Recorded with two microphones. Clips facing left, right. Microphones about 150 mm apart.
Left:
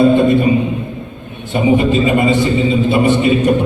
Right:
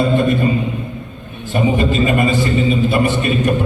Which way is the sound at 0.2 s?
20° left (ahead or behind).